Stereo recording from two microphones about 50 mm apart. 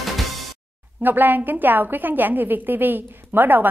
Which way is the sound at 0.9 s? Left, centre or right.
Right.